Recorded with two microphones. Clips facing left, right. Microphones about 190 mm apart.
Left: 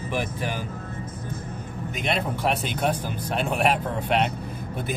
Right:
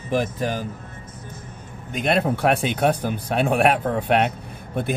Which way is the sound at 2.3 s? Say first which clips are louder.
Right 5 dB; 60° right (ahead or behind).